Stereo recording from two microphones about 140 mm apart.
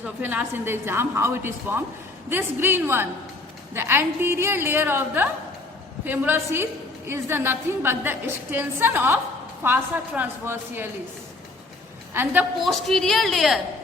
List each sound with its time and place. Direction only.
0.0 s a woman's voice: 10° right (ahead or behind)
12.1 s a woman's voice: 15° right (ahead or behind)
12.6 s a woman's voice: centre (ahead or behind)